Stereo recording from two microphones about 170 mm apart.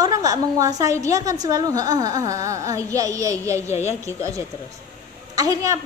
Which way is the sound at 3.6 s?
40° left (ahead or behind).